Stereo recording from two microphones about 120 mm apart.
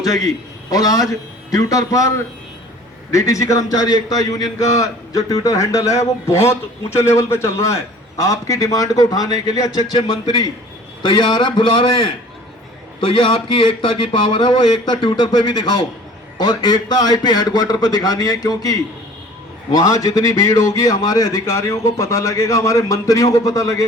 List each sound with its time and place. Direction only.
0.7 s a man's voice: 30° left (ahead or behind)